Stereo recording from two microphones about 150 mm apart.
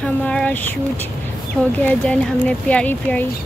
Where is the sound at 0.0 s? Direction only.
5° left (ahead or behind).